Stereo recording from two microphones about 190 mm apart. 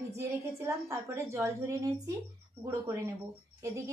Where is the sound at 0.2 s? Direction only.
15° right (ahead or behind).